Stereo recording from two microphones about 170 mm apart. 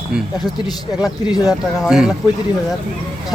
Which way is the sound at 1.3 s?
20° left (ahead or behind).